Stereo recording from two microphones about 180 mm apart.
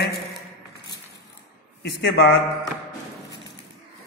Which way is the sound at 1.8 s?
75° left (ahead or behind).